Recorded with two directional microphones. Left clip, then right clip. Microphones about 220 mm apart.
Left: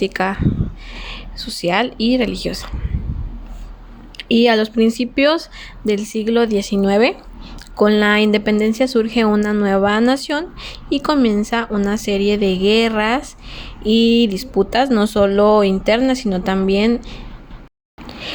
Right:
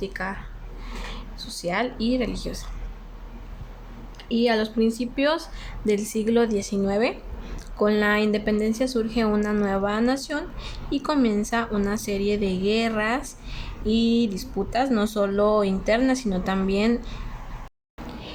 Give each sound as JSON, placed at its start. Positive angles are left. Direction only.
{"t": 0.0, "sound": "speech", "side_deg": 35}
{"t": 4.2, "sound": "speech", "side_deg": 35}